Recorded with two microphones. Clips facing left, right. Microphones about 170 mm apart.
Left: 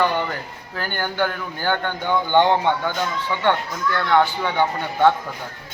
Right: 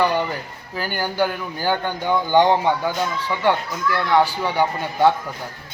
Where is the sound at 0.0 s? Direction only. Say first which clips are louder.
Right 1 dB; 15° right (ahead or behind).